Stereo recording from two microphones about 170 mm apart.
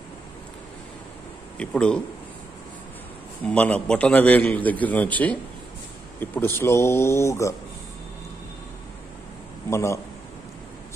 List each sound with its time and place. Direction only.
1.6 s a man's voice: 5° left (ahead or behind)
3.4 s a man's voice: 10° left (ahead or behind)
9.7 s a man's voice: 15° left (ahead or behind)